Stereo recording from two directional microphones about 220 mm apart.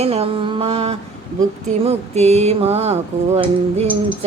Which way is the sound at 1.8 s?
30° right (ahead or behind).